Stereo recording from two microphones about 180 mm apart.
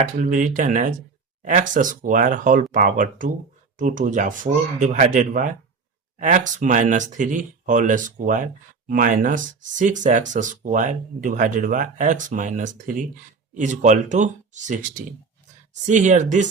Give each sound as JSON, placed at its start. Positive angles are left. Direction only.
{"t": 0.0, "sound": "speech", "side_deg": -45}